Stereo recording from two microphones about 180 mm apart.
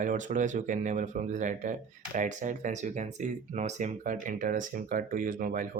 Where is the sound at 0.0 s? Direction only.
45° right (ahead or behind).